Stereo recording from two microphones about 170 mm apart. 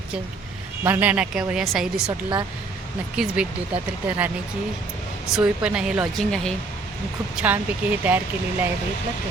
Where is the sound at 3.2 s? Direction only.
5° right (ahead or behind).